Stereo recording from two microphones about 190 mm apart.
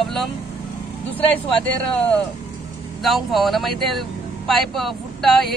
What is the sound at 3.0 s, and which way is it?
A man's voice, centre (ahead or behind).